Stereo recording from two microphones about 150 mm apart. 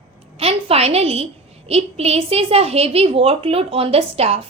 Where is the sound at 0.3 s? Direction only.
40° right (ahead or behind).